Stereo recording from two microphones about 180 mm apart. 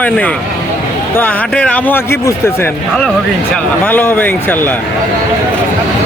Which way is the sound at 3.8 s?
10° left (ahead or behind).